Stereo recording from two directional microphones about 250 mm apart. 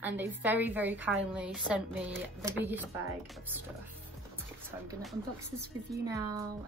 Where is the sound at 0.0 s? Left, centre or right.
Centre.